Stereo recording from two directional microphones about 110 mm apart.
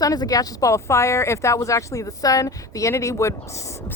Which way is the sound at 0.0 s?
35° left (ahead or behind).